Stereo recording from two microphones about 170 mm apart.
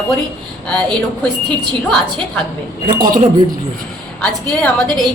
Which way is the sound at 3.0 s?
50° right (ahead or behind).